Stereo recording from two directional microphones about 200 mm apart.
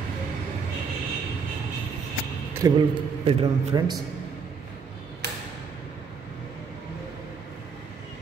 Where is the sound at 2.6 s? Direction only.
20° right (ahead or behind).